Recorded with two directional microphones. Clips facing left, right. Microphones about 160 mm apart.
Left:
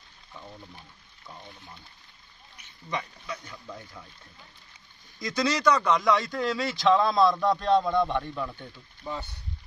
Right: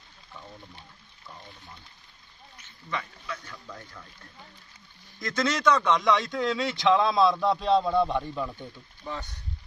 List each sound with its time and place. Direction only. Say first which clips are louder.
2.5 s speech: left 1 dB; 15° left (ahead or behind)
5.2 s a man's voice: even; centre (ahead or behind)
9.1 s speech: left 1 dB; 10° left (ahead or behind)